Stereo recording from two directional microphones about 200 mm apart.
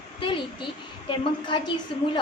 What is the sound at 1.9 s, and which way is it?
Speech, 25° left (ahead or behind).